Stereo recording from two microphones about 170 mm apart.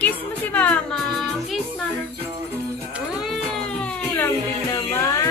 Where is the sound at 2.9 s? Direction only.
5° right (ahead or behind).